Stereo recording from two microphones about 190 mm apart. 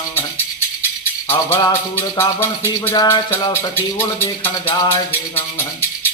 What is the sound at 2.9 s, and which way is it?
Rattle, 20° left (ahead or behind).